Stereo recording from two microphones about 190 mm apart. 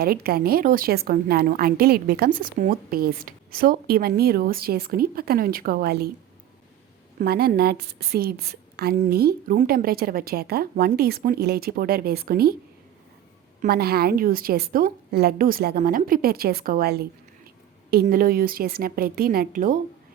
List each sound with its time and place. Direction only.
0.0 s a woman's voice: 55° right (ahead or behind)
7.2 s a woman's voice: 55° right (ahead or behind)
13.6 s a woman's voice: 55° right (ahead or behind)